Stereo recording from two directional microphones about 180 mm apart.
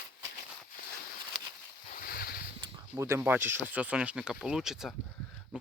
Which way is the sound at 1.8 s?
50° left (ahead or behind).